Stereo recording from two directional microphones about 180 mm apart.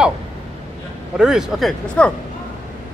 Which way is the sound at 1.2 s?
5° right (ahead or behind).